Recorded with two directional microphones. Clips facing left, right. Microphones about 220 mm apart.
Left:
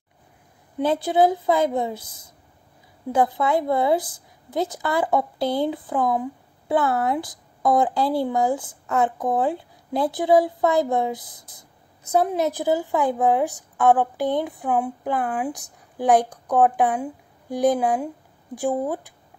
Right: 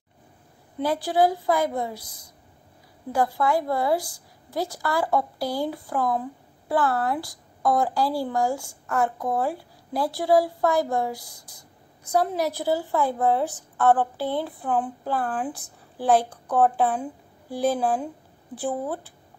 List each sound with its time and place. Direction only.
0.7 s a woman's voice: 20° left (ahead or behind)